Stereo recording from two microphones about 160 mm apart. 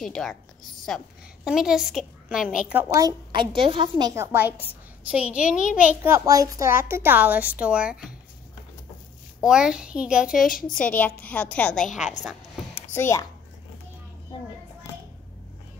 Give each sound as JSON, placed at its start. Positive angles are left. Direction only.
{"t": 0.0, "sound": "a woman's voice", "side_deg": 5}
{"t": 3.3, "sound": "a woman's voice", "side_deg": -30}
{"t": 4.1, "sound": "a woman's voice", "side_deg": -15}
{"t": 9.4, "sound": "a woman's voice", "side_deg": -5}
{"t": 10.4, "sound": "a woman's voice", "side_deg": 60}
{"t": 10.8, "sound": "a woman's voice", "side_deg": 10}
{"t": 12.0, "sound": "a woman's voice", "side_deg": 50}
{"t": 12.7, "sound": "a sound", "side_deg": 15}